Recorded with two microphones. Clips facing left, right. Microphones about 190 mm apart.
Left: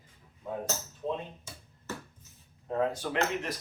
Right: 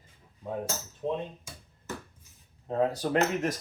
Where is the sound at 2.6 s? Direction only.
35° right (ahead or behind).